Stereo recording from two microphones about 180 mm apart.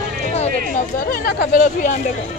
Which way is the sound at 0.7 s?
50° left (ahead or behind).